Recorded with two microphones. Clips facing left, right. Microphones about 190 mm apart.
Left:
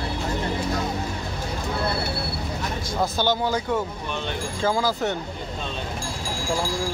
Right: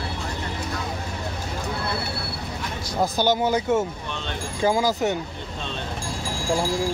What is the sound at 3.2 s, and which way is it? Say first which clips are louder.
Speech: right 4 dB; 20° right (ahead or behind).